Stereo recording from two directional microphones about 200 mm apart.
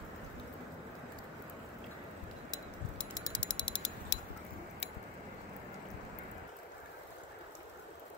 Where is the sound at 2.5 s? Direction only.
20° left (ahead or behind).